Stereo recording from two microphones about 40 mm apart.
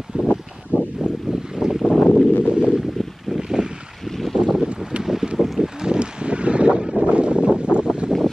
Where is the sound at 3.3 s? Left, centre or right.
Centre.